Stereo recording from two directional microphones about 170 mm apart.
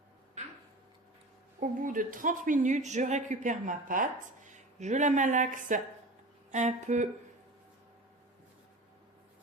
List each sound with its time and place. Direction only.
1.5 s speech: 50° right (ahead or behind)